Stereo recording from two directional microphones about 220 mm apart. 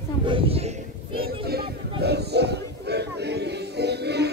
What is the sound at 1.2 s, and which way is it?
Chatter, 45° right (ahead or behind).